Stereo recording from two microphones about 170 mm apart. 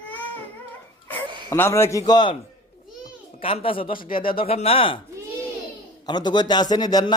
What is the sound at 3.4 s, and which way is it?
Speech, 30° left (ahead or behind).